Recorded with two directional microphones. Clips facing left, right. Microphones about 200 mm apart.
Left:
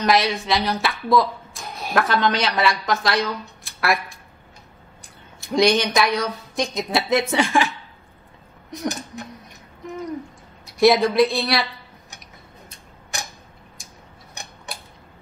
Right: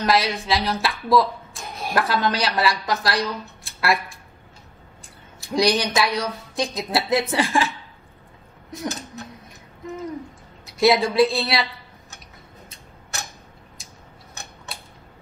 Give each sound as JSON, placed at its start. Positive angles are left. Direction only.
{"t": 0.0, "sound": "a woman's voice", "side_deg": 0}
{"t": 3.6, "sound": "a sound", "side_deg": 0}
{"t": 5.0, "sound": "a woman's voice", "side_deg": 0}
{"t": 10.6, "sound": "speech", "side_deg": 0}
{"t": 13.1, "sound": "tick-tock", "side_deg": 15}
{"t": 14.4, "sound": "tick-tock", "side_deg": 15}